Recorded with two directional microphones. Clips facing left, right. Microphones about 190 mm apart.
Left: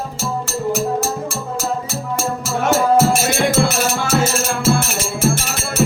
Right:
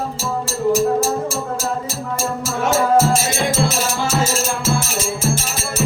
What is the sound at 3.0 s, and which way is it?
Music, 60° left (ahead or behind).